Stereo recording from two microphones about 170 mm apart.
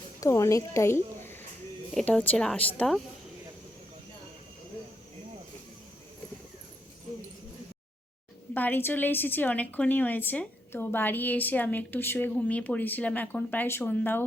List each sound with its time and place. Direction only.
0.2 s a woman's voice: 15° left (ahead or behind)
8.5 s a woman's voice: 10° left (ahead or behind)